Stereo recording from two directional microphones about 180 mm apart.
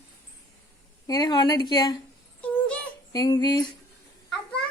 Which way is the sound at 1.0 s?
20° left (ahead or behind).